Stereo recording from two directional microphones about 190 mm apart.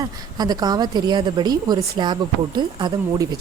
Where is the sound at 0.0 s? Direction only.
20° right (ahead or behind).